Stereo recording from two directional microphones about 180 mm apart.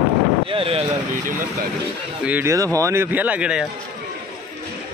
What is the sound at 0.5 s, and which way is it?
Speech, 30° right (ahead or behind).